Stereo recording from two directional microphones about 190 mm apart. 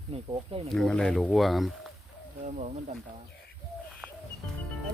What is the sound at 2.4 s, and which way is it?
Speech, 40° right (ahead or behind).